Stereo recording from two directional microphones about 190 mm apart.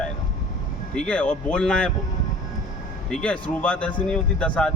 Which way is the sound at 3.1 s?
5° left (ahead or behind).